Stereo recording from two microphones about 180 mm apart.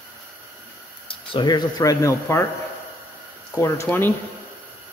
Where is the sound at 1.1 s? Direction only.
25° left (ahead or behind).